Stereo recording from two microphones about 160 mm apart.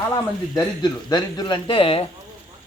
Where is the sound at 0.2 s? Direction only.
25° left (ahead or behind).